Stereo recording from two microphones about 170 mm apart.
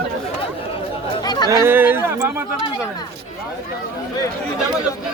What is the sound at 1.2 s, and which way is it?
Chatter, 25° left (ahead or behind).